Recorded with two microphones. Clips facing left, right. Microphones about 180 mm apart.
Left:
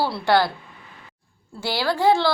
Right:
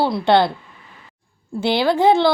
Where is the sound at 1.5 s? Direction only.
20° right (ahead or behind).